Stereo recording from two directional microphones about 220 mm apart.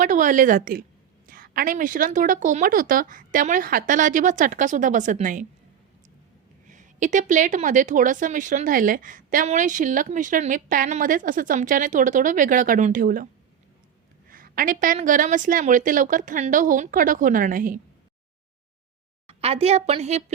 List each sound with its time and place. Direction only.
0.0 s a woman's voice: 35° right (ahead or behind)
6.7 s a woman's voice: 35° right (ahead or behind)
14.3 s a woman's voice: 40° right (ahead or behind)
19.3 s a woman's voice: 25° right (ahead or behind)